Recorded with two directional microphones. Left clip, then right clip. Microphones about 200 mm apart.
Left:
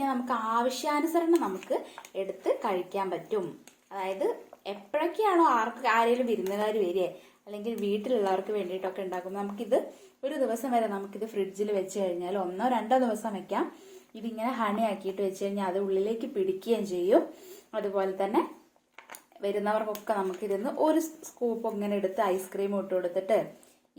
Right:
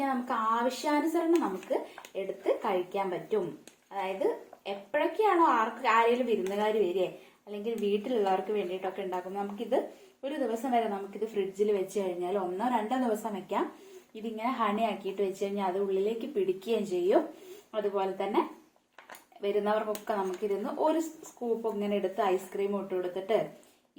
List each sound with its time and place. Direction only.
0.0 s speech: 50° left (ahead or behind)